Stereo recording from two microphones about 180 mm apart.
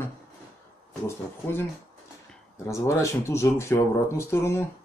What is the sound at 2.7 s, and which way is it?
Speech, 15° left (ahead or behind).